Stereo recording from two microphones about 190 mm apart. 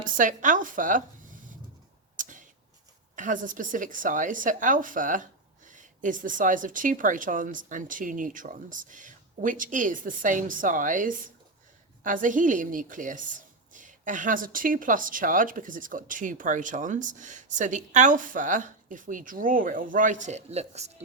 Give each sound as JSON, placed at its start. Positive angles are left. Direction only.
{"t": 0.2, "sound": "a woman's voice", "side_deg": -45}
{"t": 2.1, "sound": "a sound", "side_deg": -45}
{"t": 3.2, "sound": "a woman's voice", "side_deg": -45}